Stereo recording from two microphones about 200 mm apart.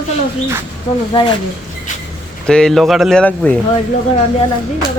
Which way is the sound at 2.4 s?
5° left (ahead or behind).